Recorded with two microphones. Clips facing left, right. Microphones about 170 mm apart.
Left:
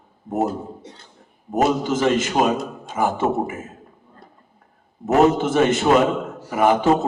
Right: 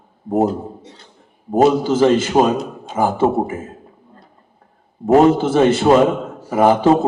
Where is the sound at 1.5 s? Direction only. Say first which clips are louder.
Right 6 dB; 30° right (ahead or behind).